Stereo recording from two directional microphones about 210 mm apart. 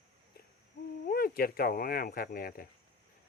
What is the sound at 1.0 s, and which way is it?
Speech, 45° left (ahead or behind).